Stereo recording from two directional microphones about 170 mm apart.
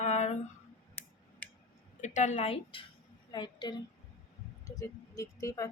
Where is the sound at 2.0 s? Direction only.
45° left (ahead or behind).